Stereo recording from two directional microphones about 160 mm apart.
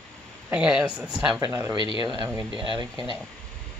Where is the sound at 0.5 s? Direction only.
5° right (ahead or behind).